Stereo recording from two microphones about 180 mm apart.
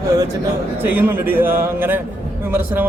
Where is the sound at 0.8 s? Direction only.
10° right (ahead or behind).